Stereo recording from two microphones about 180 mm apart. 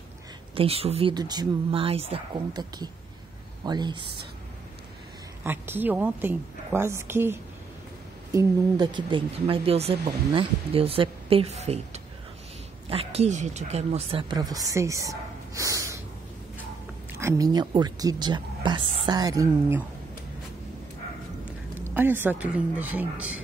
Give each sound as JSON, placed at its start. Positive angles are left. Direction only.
{"t": 0.6, "sound": "speech", "side_deg": -35}
{"t": 5.4, "sound": "a woman's voice", "side_deg": -10}
{"t": 17.2, "sound": "speech", "side_deg": -20}
{"t": 21.5, "sound": "speech", "side_deg": -10}